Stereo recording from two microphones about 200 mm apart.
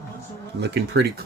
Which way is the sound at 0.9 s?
60° right (ahead or behind).